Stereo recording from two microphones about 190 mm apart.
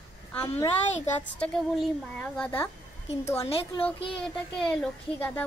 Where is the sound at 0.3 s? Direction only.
10° left (ahead or behind).